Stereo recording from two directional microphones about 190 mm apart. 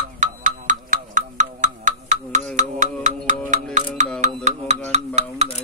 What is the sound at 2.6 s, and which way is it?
Music, 40° right (ahead or behind).